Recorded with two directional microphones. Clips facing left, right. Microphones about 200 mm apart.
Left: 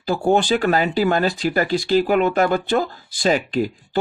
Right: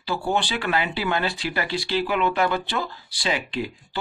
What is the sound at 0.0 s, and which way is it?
Speech, 45° left (ahead or behind).